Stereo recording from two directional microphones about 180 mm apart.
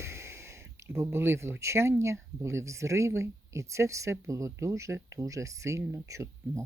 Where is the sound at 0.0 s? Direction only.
15° right (ahead or behind).